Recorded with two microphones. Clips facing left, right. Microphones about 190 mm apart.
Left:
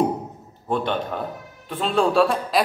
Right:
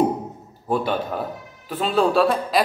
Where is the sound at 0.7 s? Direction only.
5° right (ahead or behind).